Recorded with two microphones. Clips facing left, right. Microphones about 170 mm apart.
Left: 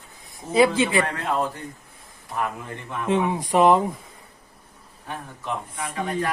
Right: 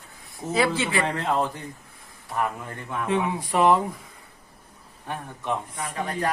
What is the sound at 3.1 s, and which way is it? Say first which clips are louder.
Speech: left 4 dB; 20° left (ahead or behind).